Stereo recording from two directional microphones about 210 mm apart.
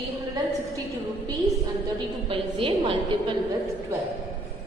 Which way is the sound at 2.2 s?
25° right (ahead or behind).